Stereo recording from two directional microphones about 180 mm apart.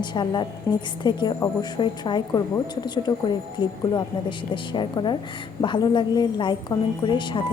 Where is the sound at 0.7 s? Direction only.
15° left (ahead or behind).